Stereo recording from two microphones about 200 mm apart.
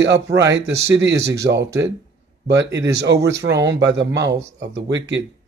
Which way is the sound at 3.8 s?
60° right (ahead or behind).